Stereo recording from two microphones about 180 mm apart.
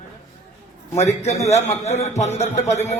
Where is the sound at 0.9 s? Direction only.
40° left (ahead or behind).